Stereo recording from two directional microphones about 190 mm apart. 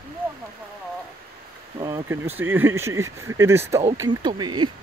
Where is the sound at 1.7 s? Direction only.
20° right (ahead or behind).